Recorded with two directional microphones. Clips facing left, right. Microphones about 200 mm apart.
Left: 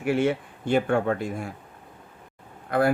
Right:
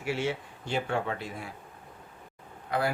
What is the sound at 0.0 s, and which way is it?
Speech, 55° left (ahead or behind).